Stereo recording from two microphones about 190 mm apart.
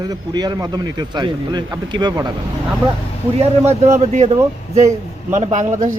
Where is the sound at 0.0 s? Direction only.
20° right (ahead or behind).